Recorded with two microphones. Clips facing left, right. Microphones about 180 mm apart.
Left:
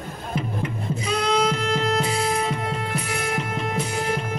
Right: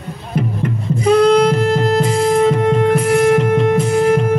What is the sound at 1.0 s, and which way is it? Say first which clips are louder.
Music: right 12 dB; 60° right (ahead or behind).